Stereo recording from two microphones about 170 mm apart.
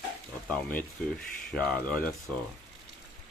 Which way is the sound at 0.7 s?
5° left (ahead or behind).